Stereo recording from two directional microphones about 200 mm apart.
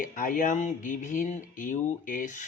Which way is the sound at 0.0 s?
45° left (ahead or behind).